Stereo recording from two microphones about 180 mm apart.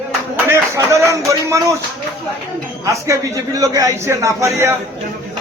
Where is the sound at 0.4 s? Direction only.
15° right (ahead or behind).